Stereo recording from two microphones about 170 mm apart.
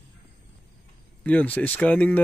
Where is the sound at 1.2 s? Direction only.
10° left (ahead or behind).